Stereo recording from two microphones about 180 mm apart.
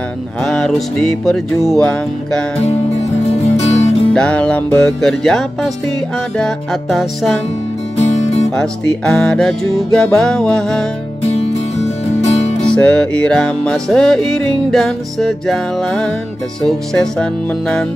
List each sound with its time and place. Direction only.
0.4 s music: centre (ahead or behind)
3.3 s music: 35° left (ahead or behind)
4.1 s music: 5° left (ahead or behind)
8.0 s music: 40° left (ahead or behind)
8.5 s music: 5° left (ahead or behind)
11.2 s music: 35° left (ahead or behind)
12.5 s music: 5° left (ahead or behind)